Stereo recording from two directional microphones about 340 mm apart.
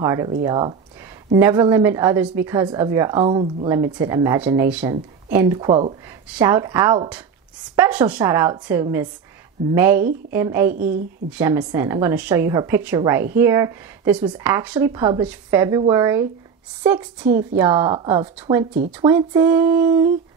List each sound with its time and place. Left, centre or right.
0.0 s a woman's voice: centre
10.7 s a woman's voice: right
11.3 s a woman's voice: centre